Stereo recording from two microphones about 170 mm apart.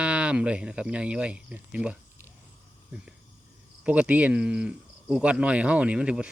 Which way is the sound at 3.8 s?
10° right (ahead or behind).